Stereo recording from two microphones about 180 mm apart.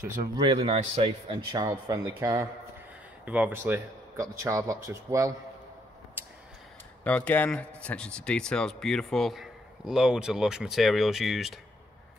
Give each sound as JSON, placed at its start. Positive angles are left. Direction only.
{"t": 0.2, "sound": "speech", "side_deg": -25}
{"t": 6.2, "sound": "a sound", "side_deg": -10}
{"t": 7.1, "sound": "speech", "side_deg": 10}